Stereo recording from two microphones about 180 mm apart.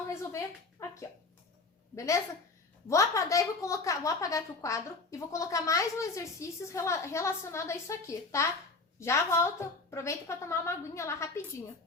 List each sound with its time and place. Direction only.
0.1 s speech: 15° left (ahead or behind)